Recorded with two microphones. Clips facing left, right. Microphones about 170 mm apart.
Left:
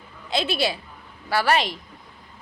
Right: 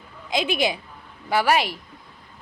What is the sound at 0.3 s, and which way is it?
A woman's voice, 15° right (ahead or behind).